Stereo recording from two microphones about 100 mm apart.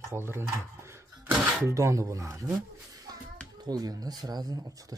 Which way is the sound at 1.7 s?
30° right (ahead or behind).